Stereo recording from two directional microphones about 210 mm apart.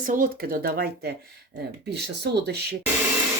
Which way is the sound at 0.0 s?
40° right (ahead or behind).